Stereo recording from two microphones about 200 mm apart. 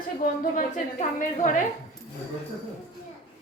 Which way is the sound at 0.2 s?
40° left (ahead or behind).